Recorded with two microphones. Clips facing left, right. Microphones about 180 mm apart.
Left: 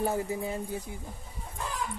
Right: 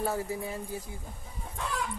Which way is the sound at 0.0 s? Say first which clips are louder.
Left 2 dB; 20° left (ahead or behind).